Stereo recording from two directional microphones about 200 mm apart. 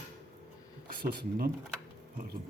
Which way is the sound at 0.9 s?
50° right (ahead or behind).